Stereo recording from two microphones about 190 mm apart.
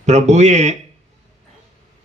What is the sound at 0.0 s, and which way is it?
Speech, 40° right (ahead or behind).